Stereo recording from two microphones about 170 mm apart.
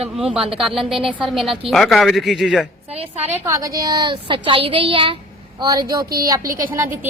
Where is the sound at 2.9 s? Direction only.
35° right (ahead or behind).